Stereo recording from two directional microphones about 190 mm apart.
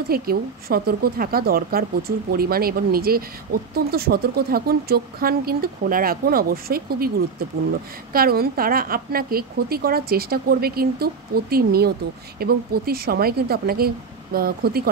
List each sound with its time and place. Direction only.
0.1 s a woman's voice: 55° right (ahead or behind)